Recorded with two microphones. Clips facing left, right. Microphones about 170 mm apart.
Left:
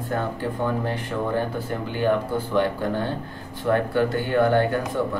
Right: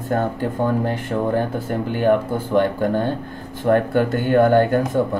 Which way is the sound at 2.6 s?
50° right (ahead or behind).